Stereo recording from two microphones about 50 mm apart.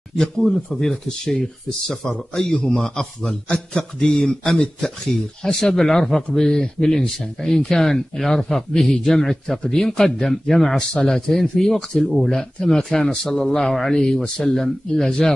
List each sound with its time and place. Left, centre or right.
0.4 s speech: centre